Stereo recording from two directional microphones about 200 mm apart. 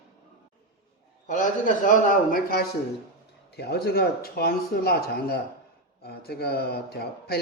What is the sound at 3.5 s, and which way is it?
Speech, 55° left (ahead or behind).